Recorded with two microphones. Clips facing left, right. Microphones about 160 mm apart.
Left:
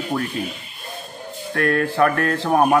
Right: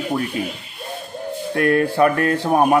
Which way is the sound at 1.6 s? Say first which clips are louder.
Right 2 dB; 10° right (ahead or behind).